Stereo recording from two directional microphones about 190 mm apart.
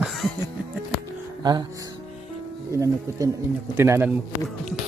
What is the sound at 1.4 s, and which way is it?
Music, 20° right (ahead or behind).